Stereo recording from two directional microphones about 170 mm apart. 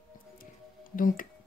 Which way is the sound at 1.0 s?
55° left (ahead or behind).